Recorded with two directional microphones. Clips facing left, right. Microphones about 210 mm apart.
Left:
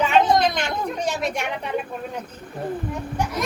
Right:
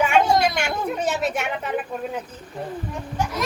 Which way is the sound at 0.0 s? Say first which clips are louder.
Even; 10° right (ahead or behind).